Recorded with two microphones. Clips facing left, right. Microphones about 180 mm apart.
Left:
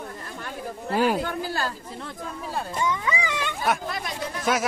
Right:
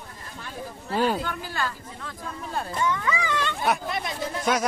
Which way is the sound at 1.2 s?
40° left (ahead or behind).